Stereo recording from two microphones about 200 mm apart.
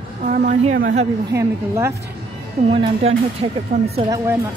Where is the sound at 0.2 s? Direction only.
40° right (ahead or behind).